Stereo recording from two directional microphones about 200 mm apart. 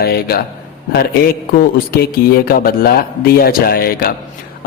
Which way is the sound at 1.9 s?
50° left (ahead or behind).